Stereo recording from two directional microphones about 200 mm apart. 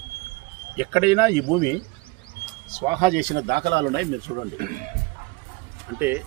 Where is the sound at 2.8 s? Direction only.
35° right (ahead or behind).